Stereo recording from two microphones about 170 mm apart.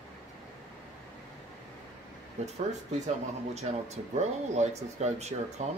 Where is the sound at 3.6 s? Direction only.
40° right (ahead or behind).